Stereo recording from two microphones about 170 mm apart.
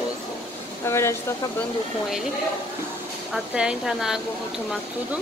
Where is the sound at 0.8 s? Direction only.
15° left (ahead or behind).